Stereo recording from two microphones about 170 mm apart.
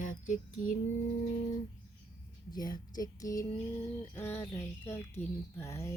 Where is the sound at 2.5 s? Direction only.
25° left (ahead or behind).